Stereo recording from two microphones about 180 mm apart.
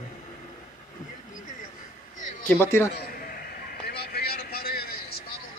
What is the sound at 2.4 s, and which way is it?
Speech, 10° left (ahead or behind).